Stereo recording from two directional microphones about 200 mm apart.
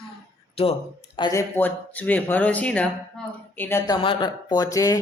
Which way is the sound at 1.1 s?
20° left (ahead or behind).